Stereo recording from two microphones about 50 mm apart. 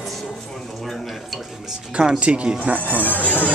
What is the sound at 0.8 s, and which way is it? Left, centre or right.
Speech, centre.